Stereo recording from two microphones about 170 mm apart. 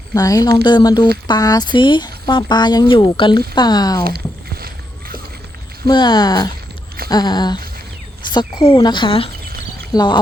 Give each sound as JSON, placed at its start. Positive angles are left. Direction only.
{"t": 0.1, "sound": "speech", "side_deg": 20}
{"t": 4.6, "sound": "a sound", "side_deg": -60}
{"t": 5.9, "sound": "speech", "side_deg": 25}